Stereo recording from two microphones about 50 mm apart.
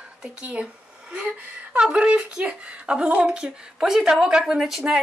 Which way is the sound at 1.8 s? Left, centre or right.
Right.